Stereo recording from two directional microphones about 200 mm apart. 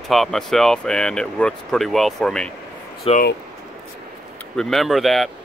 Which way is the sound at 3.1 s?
25° left (ahead or behind).